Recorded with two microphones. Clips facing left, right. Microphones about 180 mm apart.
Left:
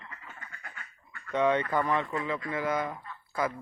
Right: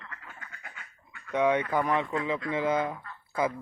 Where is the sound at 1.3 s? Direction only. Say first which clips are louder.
Right 1 dB; 10° right (ahead or behind).